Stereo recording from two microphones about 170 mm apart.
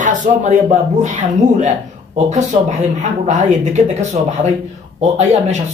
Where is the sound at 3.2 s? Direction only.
45° right (ahead or behind).